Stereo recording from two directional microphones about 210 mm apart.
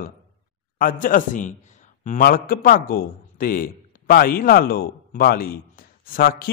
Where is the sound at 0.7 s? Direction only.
40° left (ahead or behind).